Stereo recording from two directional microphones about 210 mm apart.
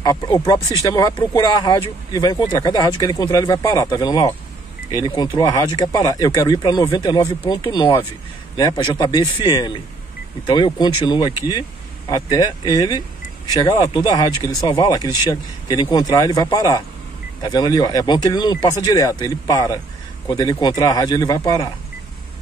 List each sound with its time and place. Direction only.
0.0 s speech: 20° left (ahead or behind)